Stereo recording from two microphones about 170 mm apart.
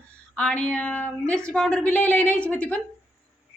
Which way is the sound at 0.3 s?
5° left (ahead or behind).